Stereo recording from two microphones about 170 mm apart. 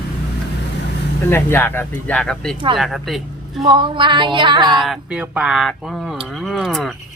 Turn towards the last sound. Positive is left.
turn(degrees=0)  # may be behind; listen again after turning